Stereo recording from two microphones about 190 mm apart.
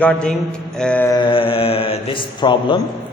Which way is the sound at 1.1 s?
25° left (ahead or behind).